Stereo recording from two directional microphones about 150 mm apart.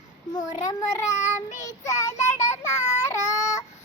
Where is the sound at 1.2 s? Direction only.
50° left (ahead or behind).